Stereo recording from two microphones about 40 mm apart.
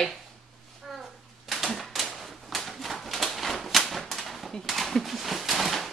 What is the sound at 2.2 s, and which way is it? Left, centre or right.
Typewriter, centre.